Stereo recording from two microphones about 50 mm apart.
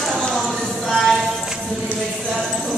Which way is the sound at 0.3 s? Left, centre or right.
Centre.